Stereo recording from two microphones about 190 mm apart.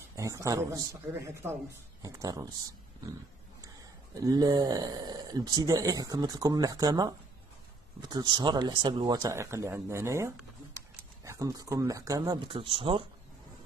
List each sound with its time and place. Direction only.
0.1 s a man's voice: 15° right (ahead or behind)
3.6 s speech: 20° right (ahead or behind)